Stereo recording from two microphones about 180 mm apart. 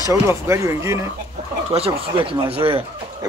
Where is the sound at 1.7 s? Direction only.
30° right (ahead or behind).